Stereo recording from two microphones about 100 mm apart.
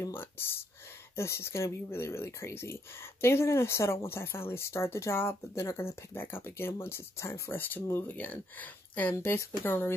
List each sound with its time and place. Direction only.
0.0 s speech: 25° left (ahead or behind)